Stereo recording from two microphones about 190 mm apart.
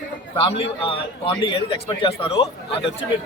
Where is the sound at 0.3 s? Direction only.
30° left (ahead or behind).